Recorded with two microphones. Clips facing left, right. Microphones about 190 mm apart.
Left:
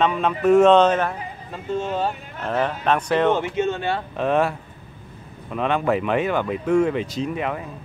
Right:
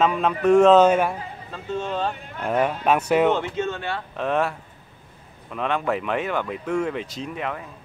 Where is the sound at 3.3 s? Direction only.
20° left (ahead or behind).